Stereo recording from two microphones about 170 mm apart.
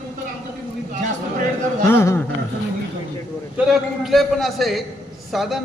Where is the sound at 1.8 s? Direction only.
15° left (ahead or behind).